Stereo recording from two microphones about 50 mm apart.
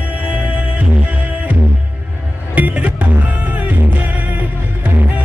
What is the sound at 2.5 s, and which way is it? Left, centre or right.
Music, right.